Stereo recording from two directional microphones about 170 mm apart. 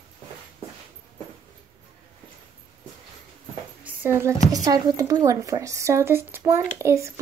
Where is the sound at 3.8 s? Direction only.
15° right (ahead or behind).